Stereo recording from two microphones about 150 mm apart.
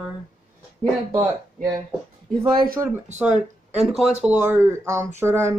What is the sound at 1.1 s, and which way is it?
Speech, 20° right (ahead or behind).